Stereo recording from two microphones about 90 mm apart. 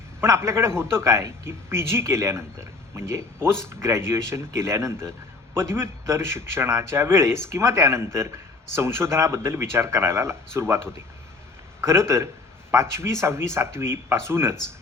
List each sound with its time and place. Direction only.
0.2 s speech: 30° right (ahead or behind)
11.8 s speech: 30° right (ahead or behind)